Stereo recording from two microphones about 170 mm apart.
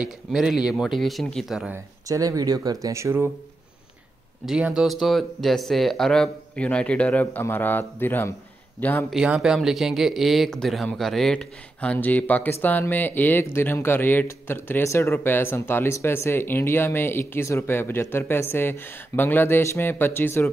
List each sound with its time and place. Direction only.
0.0 s speech: 5° right (ahead or behind)
2.0 s speech: 20° right (ahead or behind)
4.5 s speech: 5° right (ahead or behind)
9.1 s speech: 5° right (ahead or behind); by 20.4 s 15° left (ahead or behind)